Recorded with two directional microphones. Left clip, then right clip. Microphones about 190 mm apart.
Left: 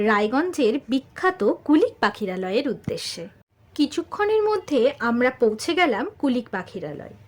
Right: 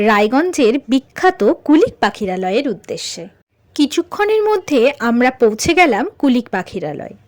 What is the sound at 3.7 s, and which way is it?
A woman's voice, 40° right (ahead or behind).